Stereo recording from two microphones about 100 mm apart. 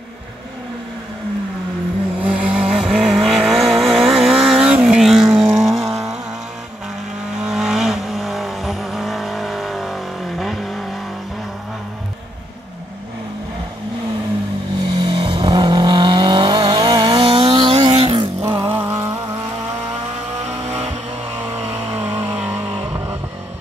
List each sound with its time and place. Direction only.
2.2 s vehicle: 10° right (ahead or behind)
7.4 s vehicle: 5° right (ahead or behind)
15.0 s vehicle: 50° right (ahead or behind)
17.2 s vehicle: 65° right (ahead or behind)
18.7 s a sound: 25° right (ahead or behind)
20.4 s vehicle: 90° right
21.9 s vehicle: 20° right (ahead or behind)